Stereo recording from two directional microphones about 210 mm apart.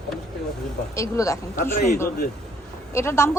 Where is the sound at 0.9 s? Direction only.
15° left (ahead or behind).